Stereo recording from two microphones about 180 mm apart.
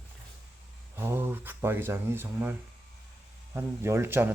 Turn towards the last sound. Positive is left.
turn(degrees=-15)  # may be behind; listen again after turning